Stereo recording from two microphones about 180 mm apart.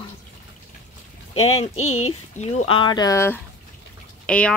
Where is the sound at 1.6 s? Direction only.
35° left (ahead or behind); by 4.6 s 5° left (ahead or behind).